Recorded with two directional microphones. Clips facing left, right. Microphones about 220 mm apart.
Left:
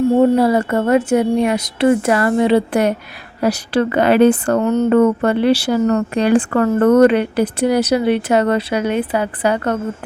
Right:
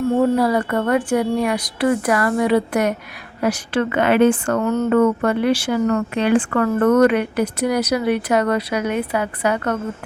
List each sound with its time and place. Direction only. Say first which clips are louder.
0.2 s a woman's voice: left 4 dB; 25° left (ahead or behind)
4.6 s a woman's voice: left 4 dB; 20° left (ahead or behind)
4.9 s a woman's voice: left 2 dB; 30° left (ahead or behind)